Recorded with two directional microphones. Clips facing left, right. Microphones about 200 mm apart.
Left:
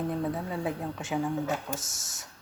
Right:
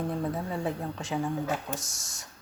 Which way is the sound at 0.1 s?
Centre (ahead or behind).